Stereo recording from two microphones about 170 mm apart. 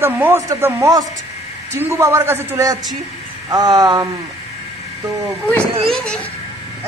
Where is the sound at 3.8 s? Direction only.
25° right (ahead or behind).